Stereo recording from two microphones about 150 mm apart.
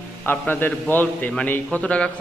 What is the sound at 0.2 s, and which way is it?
A man's voice, 15° left (ahead or behind).